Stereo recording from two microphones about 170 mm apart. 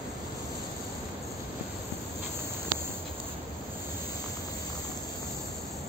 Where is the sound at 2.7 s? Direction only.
50° right (ahead or behind).